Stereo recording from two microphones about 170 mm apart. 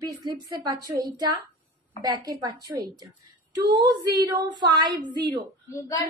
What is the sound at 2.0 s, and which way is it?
Speech, 25° right (ahead or behind).